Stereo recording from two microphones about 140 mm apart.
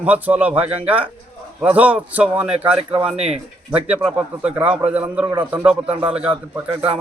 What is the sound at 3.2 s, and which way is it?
Speech, 45° right (ahead or behind).